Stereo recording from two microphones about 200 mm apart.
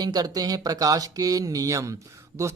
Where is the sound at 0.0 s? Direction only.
20° right (ahead or behind).